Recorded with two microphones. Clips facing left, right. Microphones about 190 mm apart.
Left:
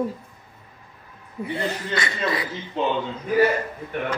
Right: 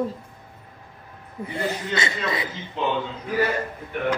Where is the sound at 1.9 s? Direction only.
25° right (ahead or behind).